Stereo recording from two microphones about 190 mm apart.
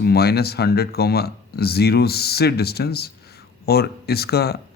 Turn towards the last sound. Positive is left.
turn(degrees=55)  # may be behind; listen again after turning